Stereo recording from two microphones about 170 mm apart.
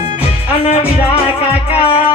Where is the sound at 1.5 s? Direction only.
35° left (ahead or behind).